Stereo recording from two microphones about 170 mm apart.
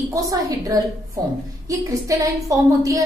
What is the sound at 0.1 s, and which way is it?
A woman's voice, 20° right (ahead or behind).